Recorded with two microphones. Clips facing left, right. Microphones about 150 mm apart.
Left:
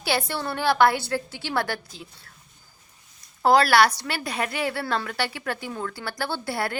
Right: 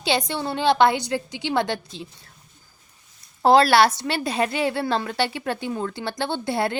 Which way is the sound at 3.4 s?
25° right (ahead or behind).